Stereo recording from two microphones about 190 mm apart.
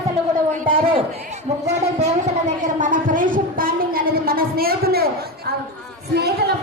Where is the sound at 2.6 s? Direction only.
45° right (ahead or behind).